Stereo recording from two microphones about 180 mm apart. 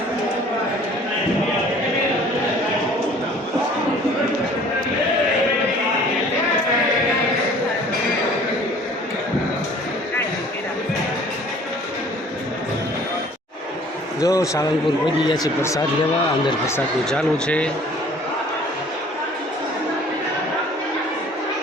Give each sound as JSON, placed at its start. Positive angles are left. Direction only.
{"t": 14.2, "sound": "a man's voice", "side_deg": 20}
{"t": 17.1, "sound": "speech", "side_deg": 5}